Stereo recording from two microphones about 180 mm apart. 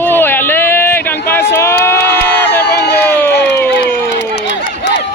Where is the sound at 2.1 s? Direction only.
70° left (ahead or behind).